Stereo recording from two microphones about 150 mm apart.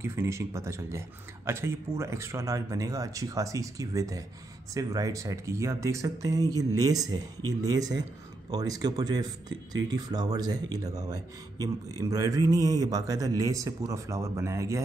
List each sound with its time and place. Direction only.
0.0 s speech: 20° right (ahead or behind)